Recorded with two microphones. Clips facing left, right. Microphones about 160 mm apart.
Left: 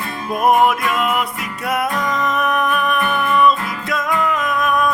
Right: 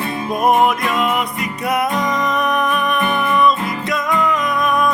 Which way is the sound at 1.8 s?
20° right (ahead or behind).